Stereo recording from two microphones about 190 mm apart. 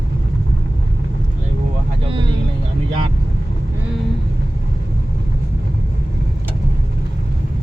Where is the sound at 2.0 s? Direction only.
25° right (ahead or behind).